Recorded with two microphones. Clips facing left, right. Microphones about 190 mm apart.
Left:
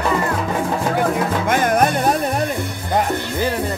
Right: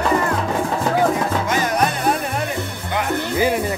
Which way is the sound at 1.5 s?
55° left (ahead or behind).